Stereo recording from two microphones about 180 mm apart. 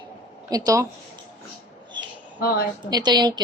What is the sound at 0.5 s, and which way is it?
Speech, 20° right (ahead or behind).